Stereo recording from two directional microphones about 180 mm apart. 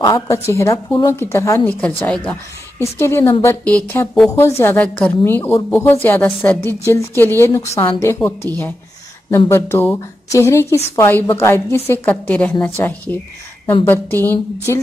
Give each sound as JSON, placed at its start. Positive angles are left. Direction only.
{"t": 0.0, "sound": "a woman's voice", "side_deg": 15}